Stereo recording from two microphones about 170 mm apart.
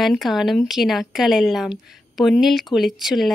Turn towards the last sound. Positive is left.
turn(degrees=0)  # may be behind; listen again after turning